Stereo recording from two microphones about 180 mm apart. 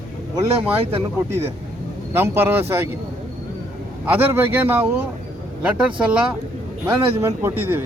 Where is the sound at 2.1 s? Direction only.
10° right (ahead or behind).